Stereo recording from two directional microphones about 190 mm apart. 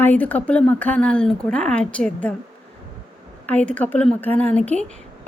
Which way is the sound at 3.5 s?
5° left (ahead or behind).